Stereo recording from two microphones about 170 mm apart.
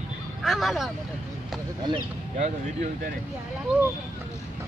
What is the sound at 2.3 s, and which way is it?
Speech, 45° right (ahead or behind).